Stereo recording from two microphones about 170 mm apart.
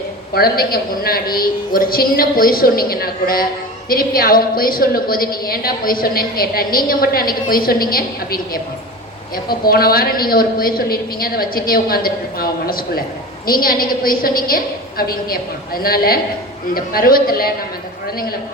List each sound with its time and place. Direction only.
0.3 s a woman's voice: 65° left (ahead or behind)